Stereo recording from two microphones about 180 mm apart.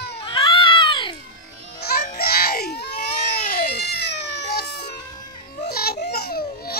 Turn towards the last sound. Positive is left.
turn(degrees=60)  # may be behind; listen again after turning